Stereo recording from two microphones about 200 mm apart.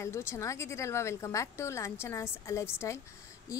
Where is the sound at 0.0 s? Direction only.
15° left (ahead or behind).